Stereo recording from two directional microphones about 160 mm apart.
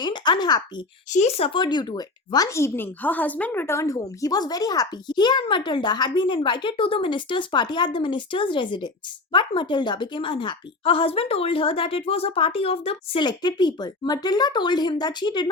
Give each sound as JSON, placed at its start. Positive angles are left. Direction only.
{"t": 0.0, "sound": "speech", "side_deg": 30}
{"t": 1.1, "sound": "speech", "side_deg": 45}